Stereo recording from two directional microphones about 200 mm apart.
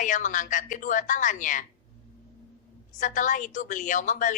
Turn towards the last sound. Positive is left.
turn(degrees=40)  # may be behind; listen again after turning